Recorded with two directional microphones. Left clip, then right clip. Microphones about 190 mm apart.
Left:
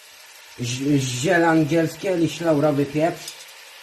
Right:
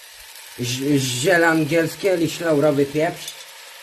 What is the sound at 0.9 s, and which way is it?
Speech, 30° right (ahead or behind).